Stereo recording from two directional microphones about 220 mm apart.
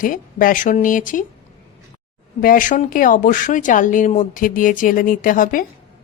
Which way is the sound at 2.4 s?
40° left (ahead or behind).